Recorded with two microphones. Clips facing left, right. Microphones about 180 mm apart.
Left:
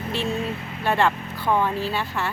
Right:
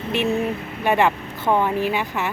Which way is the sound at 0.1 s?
20° right (ahead or behind).